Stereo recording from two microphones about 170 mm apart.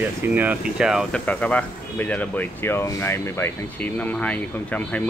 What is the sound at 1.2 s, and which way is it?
Speech, 10° left (ahead or behind).